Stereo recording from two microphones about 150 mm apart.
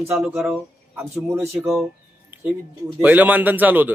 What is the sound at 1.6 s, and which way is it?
Speech, centre (ahead or behind).